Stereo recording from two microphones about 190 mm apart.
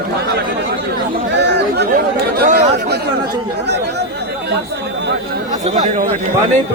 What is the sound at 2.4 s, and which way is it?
Chatter, 40° right (ahead or behind).